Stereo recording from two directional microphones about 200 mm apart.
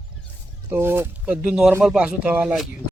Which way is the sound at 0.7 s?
10° right (ahead or behind).